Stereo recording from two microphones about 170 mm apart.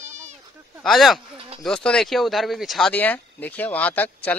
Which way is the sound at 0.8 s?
Centre (ahead or behind).